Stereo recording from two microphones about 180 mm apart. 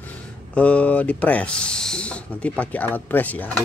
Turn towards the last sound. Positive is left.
turn(degrees=10)  # may be behind; listen again after turning